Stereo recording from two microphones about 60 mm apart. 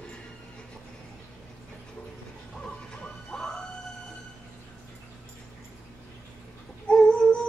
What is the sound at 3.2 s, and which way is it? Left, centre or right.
Dog, centre.